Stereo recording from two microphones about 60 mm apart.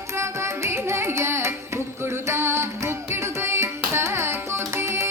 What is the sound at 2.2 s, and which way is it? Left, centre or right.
Music, right.